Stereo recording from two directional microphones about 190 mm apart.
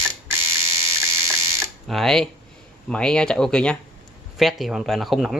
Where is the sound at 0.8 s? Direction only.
15° right (ahead or behind).